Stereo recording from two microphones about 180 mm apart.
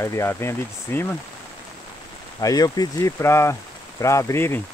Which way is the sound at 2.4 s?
20° left (ahead or behind).